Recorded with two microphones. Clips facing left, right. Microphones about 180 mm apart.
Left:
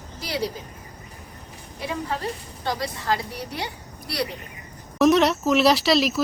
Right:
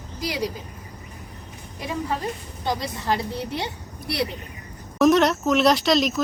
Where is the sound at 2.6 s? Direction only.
20° right (ahead or behind).